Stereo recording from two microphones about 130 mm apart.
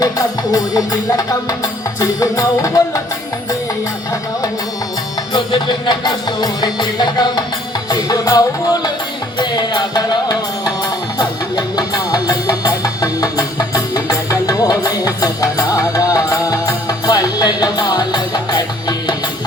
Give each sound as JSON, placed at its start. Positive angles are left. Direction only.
{"t": 0.5, "sound": "music", "side_deg": 25}
{"t": 5.3, "sound": "music", "side_deg": 35}